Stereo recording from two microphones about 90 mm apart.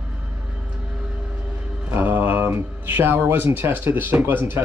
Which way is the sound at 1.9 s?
20° right (ahead or behind).